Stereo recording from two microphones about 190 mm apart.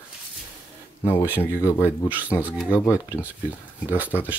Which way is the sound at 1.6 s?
15° left (ahead or behind).